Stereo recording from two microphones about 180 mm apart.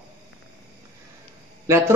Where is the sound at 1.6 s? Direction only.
15° right (ahead or behind).